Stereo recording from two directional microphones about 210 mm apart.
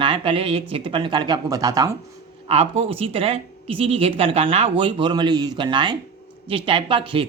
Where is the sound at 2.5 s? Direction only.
25° right (ahead or behind).